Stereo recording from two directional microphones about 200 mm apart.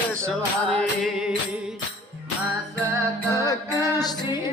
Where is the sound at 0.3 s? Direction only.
5° left (ahead or behind).